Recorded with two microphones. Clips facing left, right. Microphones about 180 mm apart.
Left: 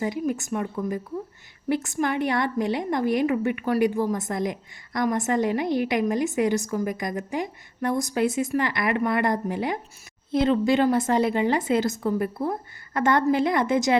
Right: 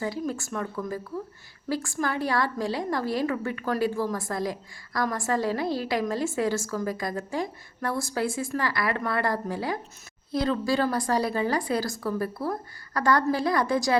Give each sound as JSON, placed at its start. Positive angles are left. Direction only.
{"t": 0.0, "sound": "a woman's voice", "side_deg": 20}